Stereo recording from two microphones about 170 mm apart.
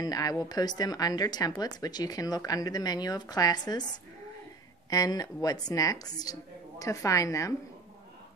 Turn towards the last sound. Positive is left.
turn(degrees=20)  # may be behind; listen again after turning